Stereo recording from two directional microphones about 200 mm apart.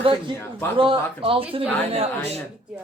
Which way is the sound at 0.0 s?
25° right (ahead or behind).